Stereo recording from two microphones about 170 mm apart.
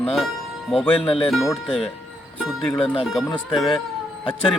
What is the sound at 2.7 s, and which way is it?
Speech, 30° left (ahead or behind).